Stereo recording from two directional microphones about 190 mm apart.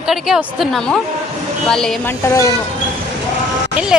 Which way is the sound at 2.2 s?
15° left (ahead or behind).